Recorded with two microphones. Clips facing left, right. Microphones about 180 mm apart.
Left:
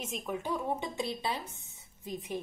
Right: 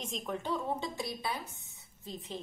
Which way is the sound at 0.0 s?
5° left (ahead or behind).